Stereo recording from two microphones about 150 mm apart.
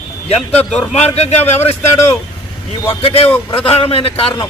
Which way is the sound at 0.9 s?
45° left (ahead or behind).